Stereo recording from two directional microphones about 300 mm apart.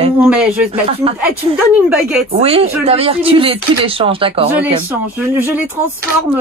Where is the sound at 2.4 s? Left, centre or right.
Centre.